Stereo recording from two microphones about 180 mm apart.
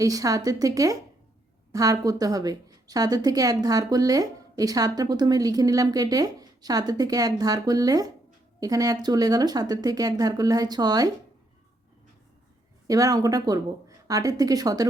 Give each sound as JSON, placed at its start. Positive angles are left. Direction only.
{"t": 0.0, "sound": "a woman's voice", "side_deg": -20}
{"t": 12.9, "sound": "a woman's voice", "side_deg": -20}